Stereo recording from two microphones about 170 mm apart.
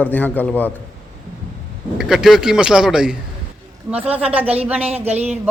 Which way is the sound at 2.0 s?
Centre (ahead or behind).